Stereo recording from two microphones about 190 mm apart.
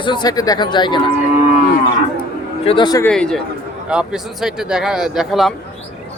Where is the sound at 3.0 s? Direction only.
5° left (ahead or behind).